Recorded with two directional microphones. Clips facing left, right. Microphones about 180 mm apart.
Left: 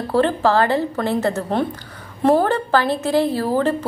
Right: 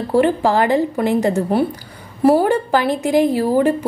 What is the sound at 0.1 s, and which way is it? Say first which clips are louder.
A woman's voice: right 2 dB; 15° right (ahead or behind).